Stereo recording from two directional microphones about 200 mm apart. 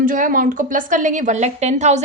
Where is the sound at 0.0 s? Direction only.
40° right (ahead or behind).